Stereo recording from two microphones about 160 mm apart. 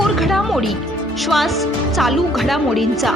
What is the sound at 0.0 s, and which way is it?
Speech, centre (ahead or behind).